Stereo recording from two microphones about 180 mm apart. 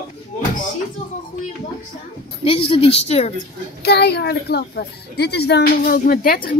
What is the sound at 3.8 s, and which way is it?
A child's voice, 65° left (ahead or behind).